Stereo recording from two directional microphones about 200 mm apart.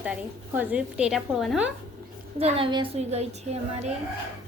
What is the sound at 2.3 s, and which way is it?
A woman's voice, 30° right (ahead or behind).